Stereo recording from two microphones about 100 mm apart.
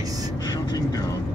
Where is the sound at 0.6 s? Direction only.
40° left (ahead or behind).